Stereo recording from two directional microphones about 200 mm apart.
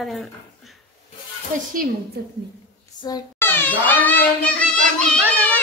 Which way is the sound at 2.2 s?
50° right (ahead or behind).